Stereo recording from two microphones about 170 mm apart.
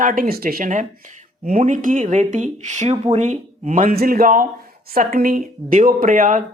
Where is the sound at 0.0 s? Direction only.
55° right (ahead or behind).